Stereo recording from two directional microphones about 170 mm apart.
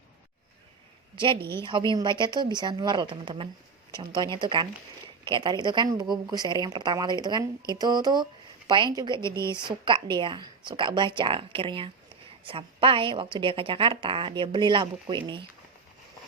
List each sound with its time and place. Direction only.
1.6 s a woman's voice: 30° right (ahead or behind)